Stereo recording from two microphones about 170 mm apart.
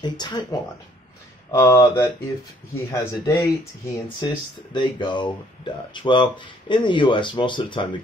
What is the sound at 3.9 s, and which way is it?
Speech, 25° left (ahead or behind).